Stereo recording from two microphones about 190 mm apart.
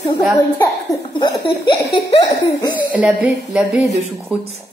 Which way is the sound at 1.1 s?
25° left (ahead or behind).